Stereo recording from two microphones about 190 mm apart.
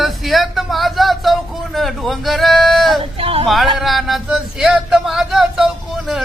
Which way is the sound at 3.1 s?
30° right (ahead or behind).